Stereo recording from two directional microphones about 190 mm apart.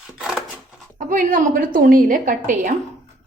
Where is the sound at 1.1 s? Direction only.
45° right (ahead or behind).